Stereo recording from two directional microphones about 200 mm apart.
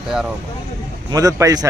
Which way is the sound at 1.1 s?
15° right (ahead or behind).